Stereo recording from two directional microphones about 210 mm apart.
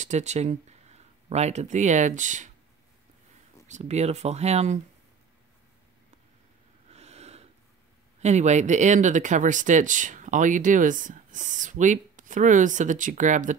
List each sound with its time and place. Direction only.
0.0 s speech: 35° right (ahead or behind)
3.6 s speech: 35° right (ahead or behind)
6.9 s snort: 30° right (ahead or behind)
8.2 s speech: 35° right (ahead or behind)